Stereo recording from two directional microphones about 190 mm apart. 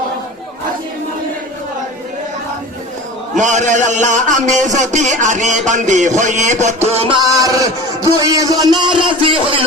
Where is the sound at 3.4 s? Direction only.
40° right (ahead or behind).